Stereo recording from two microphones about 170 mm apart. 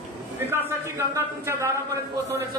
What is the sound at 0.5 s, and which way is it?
A man's voice, 15° right (ahead or behind).